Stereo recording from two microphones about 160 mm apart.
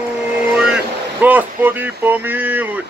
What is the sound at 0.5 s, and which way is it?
Speech, 5° right (ahead or behind).